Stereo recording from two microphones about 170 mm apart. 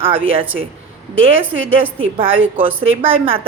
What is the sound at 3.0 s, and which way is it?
Speech, 30° right (ahead or behind).